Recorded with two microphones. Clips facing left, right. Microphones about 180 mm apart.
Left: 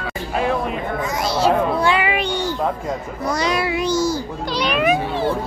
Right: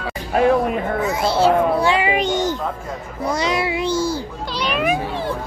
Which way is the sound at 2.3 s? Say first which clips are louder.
Right 3 dB; 45° right (ahead or behind).